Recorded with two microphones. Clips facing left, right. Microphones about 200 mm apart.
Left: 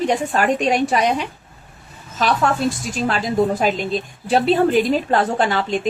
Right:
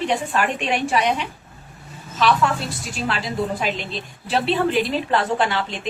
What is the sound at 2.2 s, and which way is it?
A woman's voice, 45° left (ahead or behind).